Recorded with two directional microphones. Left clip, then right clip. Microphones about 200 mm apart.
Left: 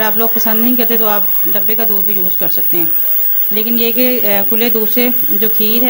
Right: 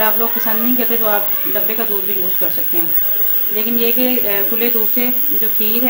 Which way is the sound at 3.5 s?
60° left (ahead or behind).